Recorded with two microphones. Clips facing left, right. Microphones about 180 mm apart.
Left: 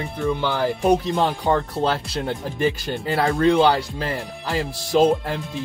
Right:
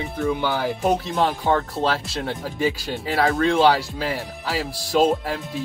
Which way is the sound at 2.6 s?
Centre (ahead or behind).